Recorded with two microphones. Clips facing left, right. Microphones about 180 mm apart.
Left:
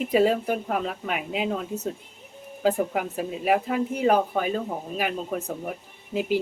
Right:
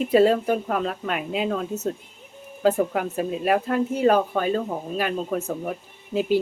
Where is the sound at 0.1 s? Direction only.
10° left (ahead or behind).